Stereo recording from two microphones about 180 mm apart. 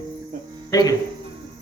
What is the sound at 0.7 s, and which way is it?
Speech, 20° left (ahead or behind).